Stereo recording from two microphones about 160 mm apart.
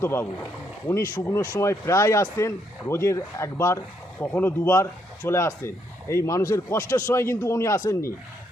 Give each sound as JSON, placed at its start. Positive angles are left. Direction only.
{"t": 0.0, "sound": "speech", "side_deg": 15}